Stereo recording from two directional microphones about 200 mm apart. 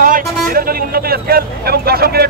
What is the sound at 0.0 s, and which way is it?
Speech, 45° right (ahead or behind).